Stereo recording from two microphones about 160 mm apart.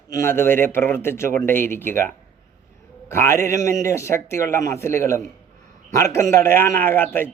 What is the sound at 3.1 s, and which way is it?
A man's voice, 15° left (ahead or behind).